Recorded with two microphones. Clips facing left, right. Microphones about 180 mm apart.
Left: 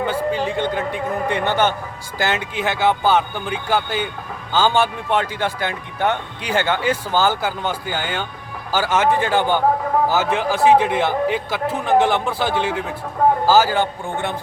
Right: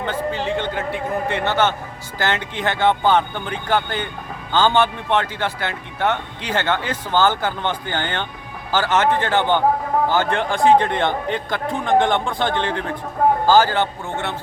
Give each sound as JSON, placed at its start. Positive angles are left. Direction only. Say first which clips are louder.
{"t": 0.0, "sound": "a man's voice", "louder": "left 3 dB", "side_deg": 10}